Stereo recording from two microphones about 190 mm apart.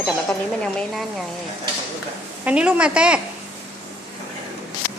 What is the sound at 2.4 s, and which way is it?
Speech, 5° right (ahead or behind).